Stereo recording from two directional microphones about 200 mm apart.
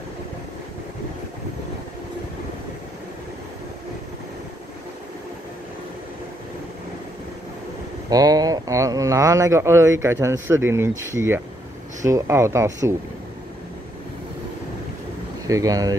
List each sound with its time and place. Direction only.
8.1 s speech: 20° right (ahead or behind)
15.4 s speech: 15° right (ahead or behind)